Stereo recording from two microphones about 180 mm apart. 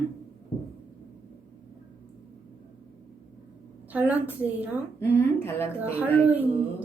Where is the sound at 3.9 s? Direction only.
10° right (ahead or behind).